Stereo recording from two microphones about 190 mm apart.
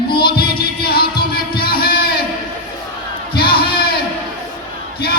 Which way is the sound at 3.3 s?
55° left (ahead or behind).